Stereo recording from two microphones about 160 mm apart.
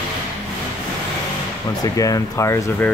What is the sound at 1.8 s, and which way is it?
Speech, 20° left (ahead or behind).